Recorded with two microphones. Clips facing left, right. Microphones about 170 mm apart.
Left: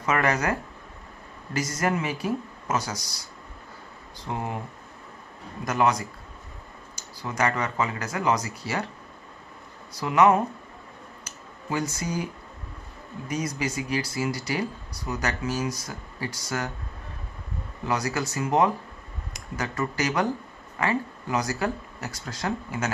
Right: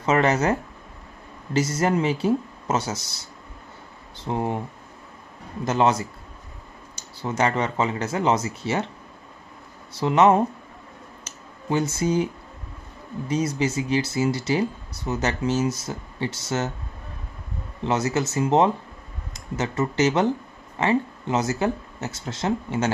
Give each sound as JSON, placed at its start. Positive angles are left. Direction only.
{"t": 0.0, "sound": "speech", "side_deg": -25}
{"t": 5.7, "sound": "speech", "side_deg": -25}
{"t": 9.9, "sound": "speech", "side_deg": -25}
{"t": 11.2, "sound": "a sound", "side_deg": -25}
{"t": 13.3, "sound": "speech", "side_deg": -30}
{"t": 17.8, "sound": "speech", "side_deg": -25}